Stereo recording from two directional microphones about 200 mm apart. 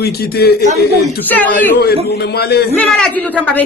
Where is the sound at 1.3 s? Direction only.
10° left (ahead or behind).